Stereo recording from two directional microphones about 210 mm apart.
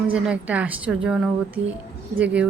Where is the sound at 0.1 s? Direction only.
5° right (ahead or behind).